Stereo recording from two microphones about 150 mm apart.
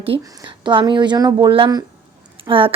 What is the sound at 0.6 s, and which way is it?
A woman's voice, 30° right (ahead or behind).